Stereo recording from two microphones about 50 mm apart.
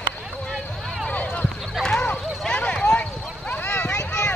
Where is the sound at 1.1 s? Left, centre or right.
Left.